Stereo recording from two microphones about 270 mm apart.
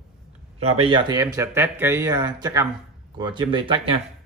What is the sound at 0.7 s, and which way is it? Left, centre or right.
Speech, centre.